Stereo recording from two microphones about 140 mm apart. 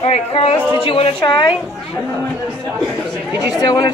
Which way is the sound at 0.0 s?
45° left (ahead or behind).